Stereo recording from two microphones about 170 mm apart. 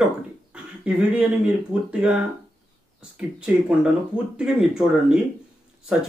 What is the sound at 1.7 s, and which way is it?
Speech, 5° right (ahead or behind).